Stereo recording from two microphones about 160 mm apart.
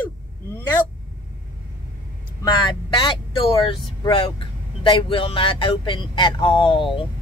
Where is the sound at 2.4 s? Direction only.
30° left (ahead or behind).